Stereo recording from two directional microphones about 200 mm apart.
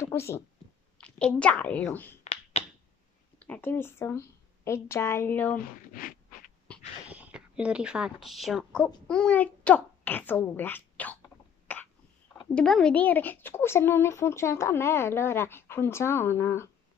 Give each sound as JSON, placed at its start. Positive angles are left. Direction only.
{"t": 0.0, "sound": "a sound", "side_deg": 10}
{"t": 0.9, "sound": "a woman's voice", "side_deg": 5}
{"t": 2.6, "sound": "finger snapping", "side_deg": 35}
{"t": 3.3, "sound": "a woman's voice", "side_deg": 5}
{"t": 5.9, "sound": "a sound", "side_deg": 45}
{"t": 7.1, "sound": "a woman's voice", "side_deg": -5}
{"t": 11.6, "sound": "cough", "side_deg": 10}
{"t": 12.5, "sound": "speech", "side_deg": 5}